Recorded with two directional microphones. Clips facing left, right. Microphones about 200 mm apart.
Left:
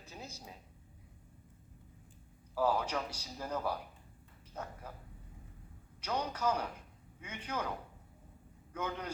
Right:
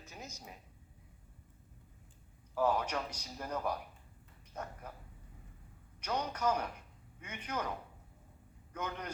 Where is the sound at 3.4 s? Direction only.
10° right (ahead or behind).